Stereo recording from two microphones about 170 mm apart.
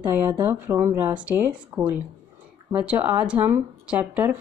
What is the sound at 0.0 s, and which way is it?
Speech, 10° right (ahead or behind).